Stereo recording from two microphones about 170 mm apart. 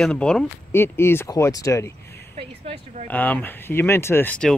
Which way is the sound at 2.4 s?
35° right (ahead or behind).